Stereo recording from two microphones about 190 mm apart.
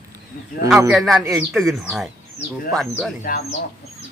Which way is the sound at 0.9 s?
Centre (ahead or behind).